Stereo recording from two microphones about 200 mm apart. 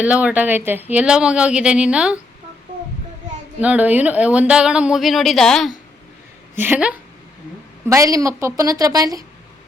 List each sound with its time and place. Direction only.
0.0 s speech: 5° right (ahead or behind)
3.6 s a woman's voice: 5° right (ahead or behind)